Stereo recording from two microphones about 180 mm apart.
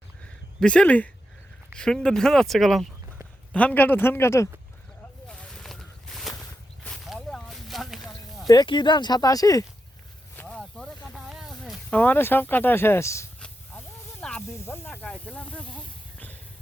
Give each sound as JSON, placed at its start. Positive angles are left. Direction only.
{"t": 0.6, "sound": "speech", "side_deg": 5}
{"t": 5.3, "sound": "a sound", "side_deg": 5}
{"t": 8.4, "sound": "speech", "side_deg": 25}
{"t": 10.3, "sound": "a sound", "side_deg": 5}
{"t": 13.4, "sound": "snake", "side_deg": 5}
{"t": 16.1, "sound": "music", "side_deg": 10}